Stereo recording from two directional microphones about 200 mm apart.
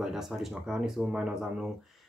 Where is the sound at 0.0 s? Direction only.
Centre (ahead or behind).